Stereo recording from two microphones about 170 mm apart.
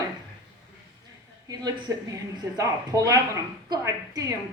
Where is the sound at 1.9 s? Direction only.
15° right (ahead or behind).